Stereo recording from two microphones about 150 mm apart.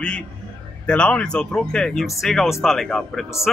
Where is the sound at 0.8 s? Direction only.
5° left (ahead or behind).